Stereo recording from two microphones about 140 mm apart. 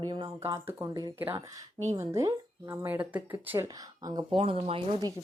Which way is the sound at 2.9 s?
10° right (ahead or behind).